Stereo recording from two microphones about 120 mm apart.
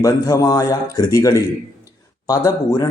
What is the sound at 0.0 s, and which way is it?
A man's voice, 30° left (ahead or behind).